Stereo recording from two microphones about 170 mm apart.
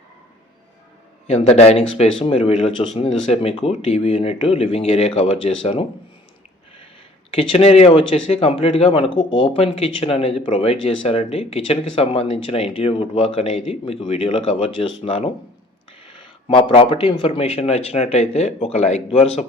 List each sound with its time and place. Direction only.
1.3 s speech: 40° left (ahead or behind)
7.3 s speech: 35° left (ahead or behind)
16.5 s speech: 30° left (ahead or behind)